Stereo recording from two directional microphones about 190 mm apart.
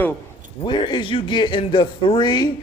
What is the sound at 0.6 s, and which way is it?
Speech, 25° left (ahead or behind).